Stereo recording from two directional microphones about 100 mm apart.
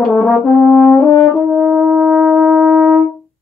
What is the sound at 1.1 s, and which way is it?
French horn, 15° left (ahead or behind).